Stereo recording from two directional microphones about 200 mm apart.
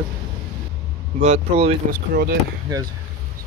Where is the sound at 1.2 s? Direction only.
30° right (ahead or behind).